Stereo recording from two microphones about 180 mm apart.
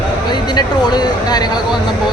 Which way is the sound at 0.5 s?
25° left (ahead or behind).